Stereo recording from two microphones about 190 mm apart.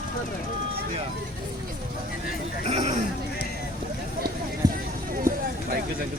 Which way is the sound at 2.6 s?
35° right (ahead or behind).